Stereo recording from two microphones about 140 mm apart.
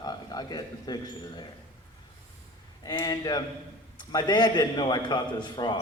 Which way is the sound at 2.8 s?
30° left (ahead or behind).